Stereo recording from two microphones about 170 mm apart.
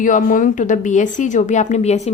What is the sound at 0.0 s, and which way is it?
Speech, 50° left (ahead or behind).